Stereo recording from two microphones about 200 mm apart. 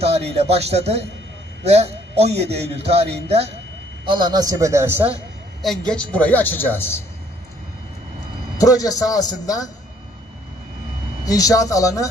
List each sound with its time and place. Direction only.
0.0 s a man's voice: 30° right (ahead or behind); by 7.0 s 10° left (ahead or behind)
8.5 s a man's voice: 20° left (ahead or behind)
11.2 s speech: 15° left (ahead or behind)